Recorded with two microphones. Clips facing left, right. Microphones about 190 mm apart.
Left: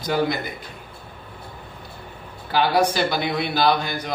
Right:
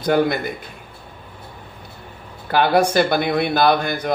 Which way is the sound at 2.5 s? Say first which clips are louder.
Right 3 dB; 50° right (ahead or behind).